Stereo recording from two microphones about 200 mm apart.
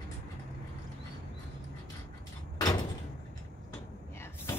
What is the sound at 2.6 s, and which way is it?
Door, 20° left (ahead or behind).